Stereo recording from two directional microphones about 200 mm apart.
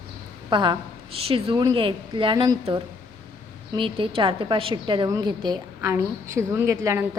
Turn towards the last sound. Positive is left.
turn(degrees=-15)  # may be behind; listen again after turning